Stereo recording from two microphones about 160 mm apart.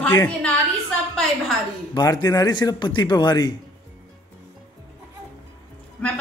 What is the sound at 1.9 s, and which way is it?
A man's voice, 25° left (ahead or behind).